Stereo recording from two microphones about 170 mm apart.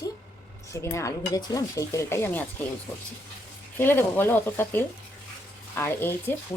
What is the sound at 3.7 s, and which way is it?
Speech, 10° left (ahead or behind).